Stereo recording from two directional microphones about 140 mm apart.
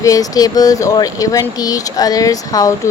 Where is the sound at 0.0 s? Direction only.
25° left (ahead or behind).